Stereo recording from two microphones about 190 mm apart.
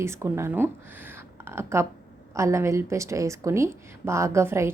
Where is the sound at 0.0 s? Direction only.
15° right (ahead or behind).